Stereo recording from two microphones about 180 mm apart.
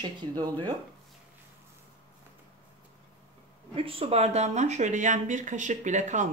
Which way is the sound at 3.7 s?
30° right (ahead or behind).